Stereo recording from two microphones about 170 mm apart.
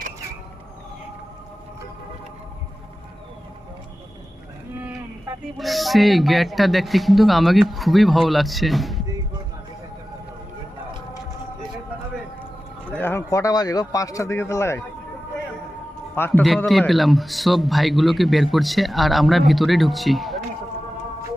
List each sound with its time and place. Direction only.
5.5 s a man's voice: centre (ahead or behind)
12.9 s speech: 10° left (ahead or behind)
16.1 s a man's voice: 10° left (ahead or behind)
16.4 s a man's voice: centre (ahead or behind)